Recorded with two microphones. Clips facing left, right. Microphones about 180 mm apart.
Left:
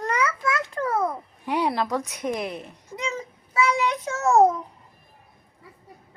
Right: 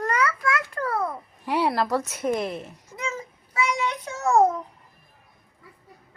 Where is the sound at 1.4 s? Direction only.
Centre (ahead or behind).